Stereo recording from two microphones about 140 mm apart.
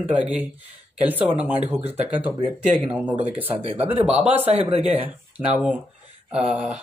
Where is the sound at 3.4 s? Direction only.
45° right (ahead or behind).